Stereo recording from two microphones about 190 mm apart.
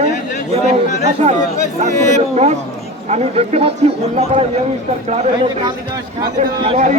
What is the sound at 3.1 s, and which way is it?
Speech, 30° right (ahead or behind).